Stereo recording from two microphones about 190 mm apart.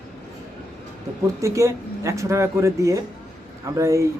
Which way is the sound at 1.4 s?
15° right (ahead or behind).